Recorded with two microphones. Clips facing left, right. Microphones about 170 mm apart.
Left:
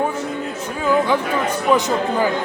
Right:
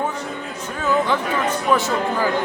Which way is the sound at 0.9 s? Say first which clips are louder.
Left 2 dB; 10° left (ahead or behind).